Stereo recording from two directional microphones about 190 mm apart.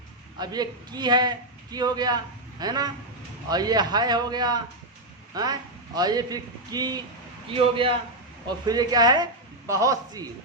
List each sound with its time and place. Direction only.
0.3 s a man's voice: 20° right (ahead or behind)